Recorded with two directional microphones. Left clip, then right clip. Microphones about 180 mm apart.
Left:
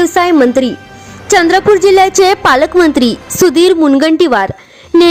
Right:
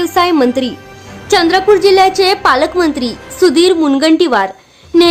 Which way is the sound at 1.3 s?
35° left (ahead or behind).